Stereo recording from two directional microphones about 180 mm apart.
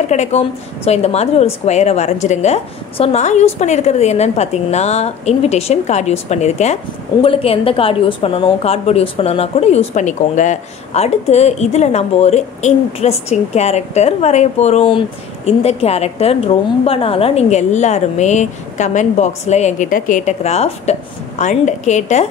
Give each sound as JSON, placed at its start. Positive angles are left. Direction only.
{"t": 0.1, "sound": "a woman's voice", "side_deg": 40}